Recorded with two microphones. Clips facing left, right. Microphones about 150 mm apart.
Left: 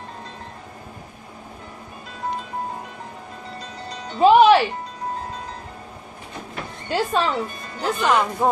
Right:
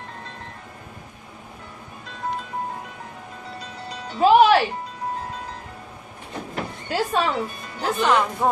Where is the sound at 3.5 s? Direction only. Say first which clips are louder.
Left 1 dB; 5° right (ahead or behind).